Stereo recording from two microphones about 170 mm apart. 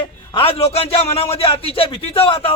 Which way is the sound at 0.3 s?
30° left (ahead or behind).